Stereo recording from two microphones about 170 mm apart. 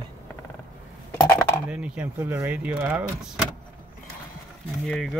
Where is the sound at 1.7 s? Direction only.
5° right (ahead or behind).